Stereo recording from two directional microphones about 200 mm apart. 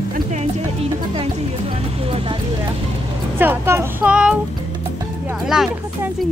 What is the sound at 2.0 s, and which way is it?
Speech, 25° right (ahead or behind).